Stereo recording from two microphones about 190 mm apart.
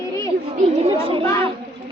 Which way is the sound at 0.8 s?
30° right (ahead or behind).